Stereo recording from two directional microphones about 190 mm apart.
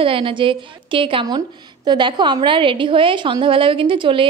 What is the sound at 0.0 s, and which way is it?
A woman's voice, 30° right (ahead or behind).